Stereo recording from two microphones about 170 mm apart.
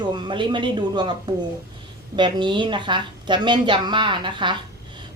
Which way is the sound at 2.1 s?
25° right (ahead or behind).